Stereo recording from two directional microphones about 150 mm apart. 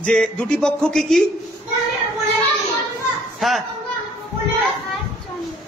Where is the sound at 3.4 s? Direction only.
Centre (ahead or behind).